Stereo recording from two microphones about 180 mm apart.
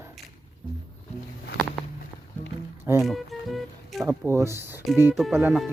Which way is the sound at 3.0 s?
Centre (ahead or behind).